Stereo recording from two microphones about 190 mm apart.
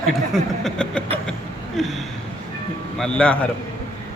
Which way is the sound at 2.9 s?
5° left (ahead or behind).